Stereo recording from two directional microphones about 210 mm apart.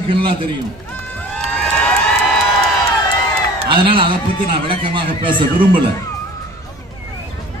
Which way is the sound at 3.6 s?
25° right (ahead or behind).